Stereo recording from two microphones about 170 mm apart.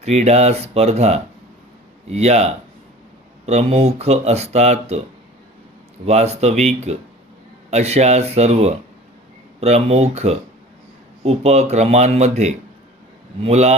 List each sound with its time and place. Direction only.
0.0 s speech: 40° right (ahead or behind)
6.1 s speech: 40° right (ahead or behind)